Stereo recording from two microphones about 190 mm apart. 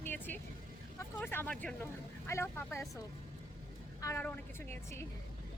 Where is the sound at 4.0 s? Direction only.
15° left (ahead or behind).